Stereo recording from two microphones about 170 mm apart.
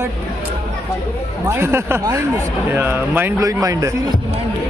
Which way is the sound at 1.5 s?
15° right (ahead or behind).